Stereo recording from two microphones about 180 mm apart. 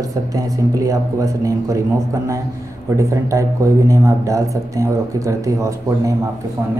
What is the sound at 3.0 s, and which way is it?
Speech, 15° right (ahead or behind).